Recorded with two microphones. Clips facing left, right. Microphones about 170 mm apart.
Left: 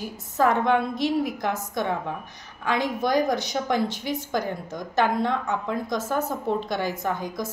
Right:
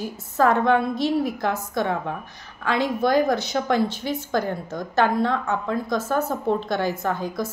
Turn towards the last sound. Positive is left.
turn(degrees=15)  # may be behind; listen again after turning